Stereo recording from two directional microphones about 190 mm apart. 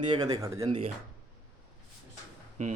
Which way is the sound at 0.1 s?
20° right (ahead or behind).